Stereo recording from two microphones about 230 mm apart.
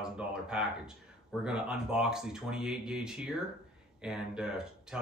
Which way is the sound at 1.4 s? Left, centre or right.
Centre.